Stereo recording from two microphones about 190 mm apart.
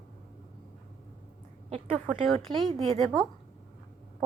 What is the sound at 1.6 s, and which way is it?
Speech, 30° right (ahead or behind).